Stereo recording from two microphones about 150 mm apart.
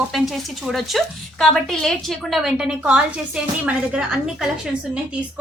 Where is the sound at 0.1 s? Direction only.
Centre (ahead or behind).